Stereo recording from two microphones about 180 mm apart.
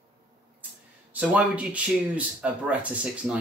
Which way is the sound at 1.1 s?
5° right (ahead or behind).